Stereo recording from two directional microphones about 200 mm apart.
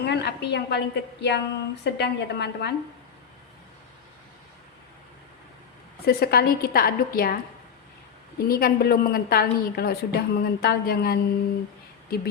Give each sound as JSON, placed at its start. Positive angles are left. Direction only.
{"t": 0.0, "sound": "a woman's voice", "side_deg": 60}
{"t": 6.1, "sound": "a woman's voice", "side_deg": 50}
{"t": 8.4, "sound": "a woman's voice", "side_deg": 50}